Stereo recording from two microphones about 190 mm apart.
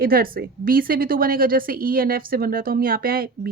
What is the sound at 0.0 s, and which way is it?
Speech, 50° right (ahead or behind).